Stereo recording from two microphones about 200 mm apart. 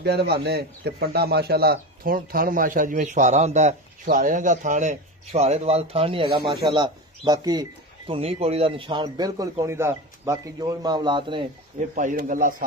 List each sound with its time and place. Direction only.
0.0 s a man's voice: 55° right (ahead or behind); by 11.4 s 25° right (ahead or behind)
11.9 s a man's voice: 40° right (ahead or behind)